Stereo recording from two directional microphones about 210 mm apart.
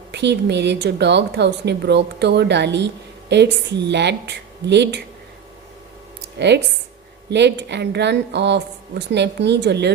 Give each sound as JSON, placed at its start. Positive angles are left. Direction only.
{"t": 0.1, "sound": "a woman's voice", "side_deg": -55}
{"t": 6.2, "sound": "a sound", "side_deg": -55}
{"t": 7.3, "sound": "a woman's voice", "side_deg": -55}